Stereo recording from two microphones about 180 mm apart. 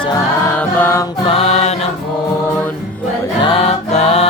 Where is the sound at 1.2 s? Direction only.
35° left (ahead or behind).